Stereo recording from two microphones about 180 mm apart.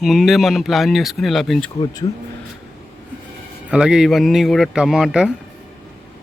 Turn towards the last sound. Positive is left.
turn(degrees=-5)  # may be behind; listen again after turning